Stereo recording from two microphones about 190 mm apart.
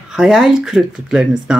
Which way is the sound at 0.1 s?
Centre (ahead or behind).